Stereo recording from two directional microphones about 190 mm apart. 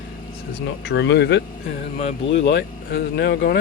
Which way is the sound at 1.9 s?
35° left (ahead or behind).